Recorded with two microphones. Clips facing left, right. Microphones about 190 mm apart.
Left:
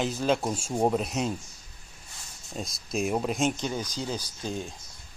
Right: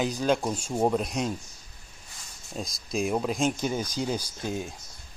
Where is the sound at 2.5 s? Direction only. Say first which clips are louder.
Right 1 dB; centre (ahead or behind).